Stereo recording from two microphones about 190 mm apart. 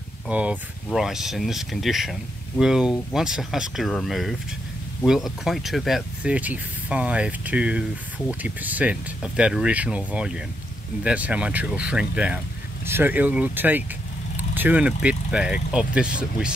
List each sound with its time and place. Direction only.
0.3 s speech: 5° right (ahead or behind)